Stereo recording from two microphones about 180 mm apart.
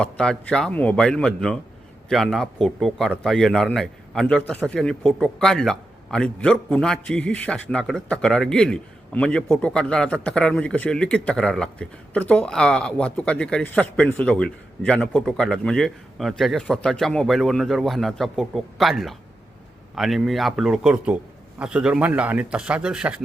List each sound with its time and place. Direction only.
0.0 s a man's voice: 5° left (ahead or behind)